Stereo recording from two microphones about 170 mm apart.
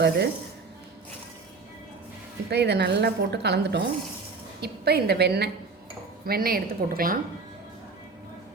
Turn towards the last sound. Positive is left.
turn(degrees=-60)  # may be behind; listen again after turning